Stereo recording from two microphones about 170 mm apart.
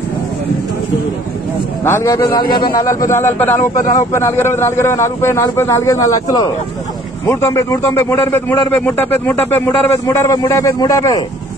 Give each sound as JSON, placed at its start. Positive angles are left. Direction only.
{"t": 1.9, "sound": "a man's voice", "side_deg": 15}